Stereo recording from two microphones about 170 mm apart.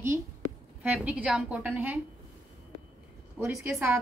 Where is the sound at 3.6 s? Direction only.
15° right (ahead or behind).